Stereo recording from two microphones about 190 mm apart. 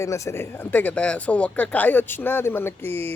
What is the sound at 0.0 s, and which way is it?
Speech, 15° left (ahead or behind).